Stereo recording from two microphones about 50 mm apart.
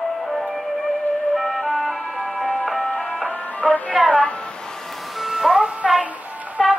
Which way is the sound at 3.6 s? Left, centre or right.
Centre.